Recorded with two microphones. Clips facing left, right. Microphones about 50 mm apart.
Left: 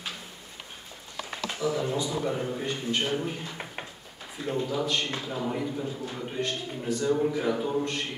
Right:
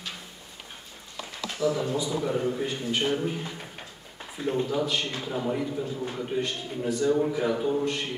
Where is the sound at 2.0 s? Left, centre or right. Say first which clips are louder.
Right 2 dB; centre.